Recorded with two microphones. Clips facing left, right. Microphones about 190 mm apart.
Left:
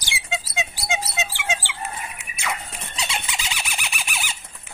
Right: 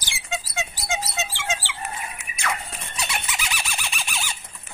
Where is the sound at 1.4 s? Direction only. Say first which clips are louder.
Left 1 dB; 10° left (ahead or behind).